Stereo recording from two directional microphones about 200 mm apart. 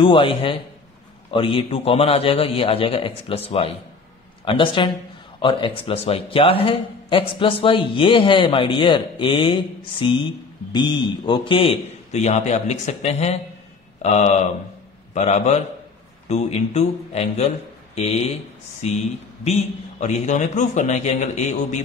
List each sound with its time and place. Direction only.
0.0 s a man's voice: 25° left (ahead or behind)